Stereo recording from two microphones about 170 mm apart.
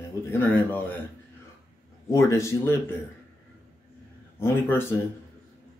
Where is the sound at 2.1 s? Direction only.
20° left (ahead or behind).